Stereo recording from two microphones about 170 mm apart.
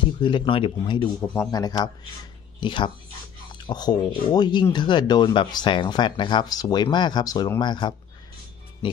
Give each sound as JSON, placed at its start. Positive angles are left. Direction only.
{"t": 0.2, "sound": "speech", "side_deg": 30}